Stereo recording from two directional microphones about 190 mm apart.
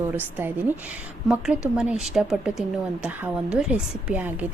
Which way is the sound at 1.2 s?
5° right (ahead or behind).